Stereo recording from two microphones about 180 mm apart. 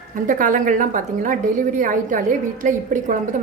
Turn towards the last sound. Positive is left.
turn(degrees=-45)  # may be behind; listen again after turning